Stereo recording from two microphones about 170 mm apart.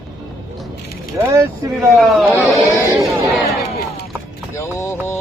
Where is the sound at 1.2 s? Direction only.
20° right (ahead or behind).